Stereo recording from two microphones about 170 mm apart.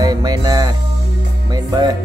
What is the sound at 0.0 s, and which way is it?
Music, 25° right (ahead or behind).